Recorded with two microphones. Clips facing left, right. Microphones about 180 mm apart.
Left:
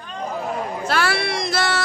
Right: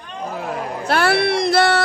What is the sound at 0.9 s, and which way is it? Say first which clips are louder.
Speech: right 6 dB; 60° right (ahead or behind).